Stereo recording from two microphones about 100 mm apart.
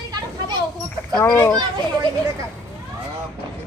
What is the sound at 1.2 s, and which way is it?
Speech, 25° left (ahead or behind).